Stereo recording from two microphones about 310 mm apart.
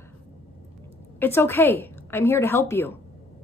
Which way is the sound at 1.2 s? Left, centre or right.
Centre.